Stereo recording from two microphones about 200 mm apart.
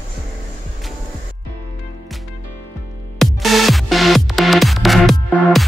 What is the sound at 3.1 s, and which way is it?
Music, centre (ahead or behind).